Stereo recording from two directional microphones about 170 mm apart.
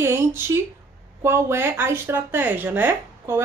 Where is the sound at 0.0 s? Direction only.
15° right (ahead or behind).